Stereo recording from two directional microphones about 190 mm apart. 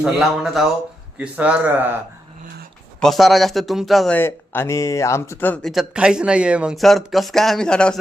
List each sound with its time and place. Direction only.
0.0 s a man's voice: 5° right (ahead or behind)
3.0 s speech: centre (ahead or behind)
5.7 s speech: 5° right (ahead or behind)